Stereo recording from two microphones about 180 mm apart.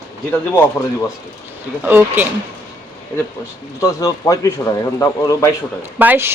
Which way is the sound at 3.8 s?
20° left (ahead or behind).